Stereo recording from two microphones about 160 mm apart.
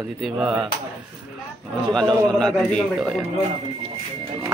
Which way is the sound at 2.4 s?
5° left (ahead or behind).